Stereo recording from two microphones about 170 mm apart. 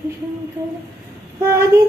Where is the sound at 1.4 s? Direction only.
15° right (ahead or behind).